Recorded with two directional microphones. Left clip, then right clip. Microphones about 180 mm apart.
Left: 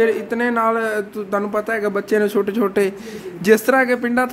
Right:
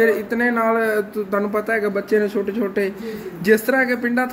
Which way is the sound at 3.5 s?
30° left (ahead or behind).